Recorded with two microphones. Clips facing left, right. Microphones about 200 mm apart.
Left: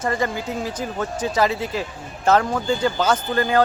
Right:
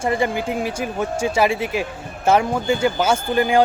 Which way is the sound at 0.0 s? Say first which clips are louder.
Right 3 dB; 15° right (ahead or behind).